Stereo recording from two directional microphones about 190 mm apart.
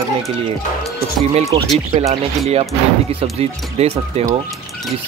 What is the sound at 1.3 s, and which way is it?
Speech, 35° right (ahead or behind).